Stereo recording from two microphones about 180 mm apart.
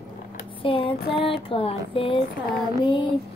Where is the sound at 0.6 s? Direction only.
30° left (ahead or behind).